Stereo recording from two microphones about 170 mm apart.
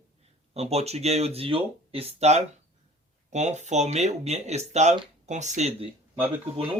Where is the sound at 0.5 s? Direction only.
40° right (ahead or behind).